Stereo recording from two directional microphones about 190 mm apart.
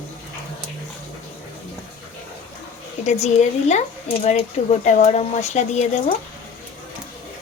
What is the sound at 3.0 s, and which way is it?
Speech, 35° left (ahead or behind).